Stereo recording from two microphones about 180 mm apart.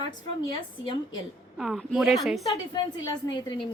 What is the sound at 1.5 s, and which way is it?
Speech, centre (ahead or behind).